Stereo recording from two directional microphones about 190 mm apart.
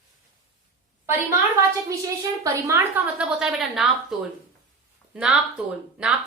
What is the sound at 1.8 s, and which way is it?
A woman's voice, 15° right (ahead or behind).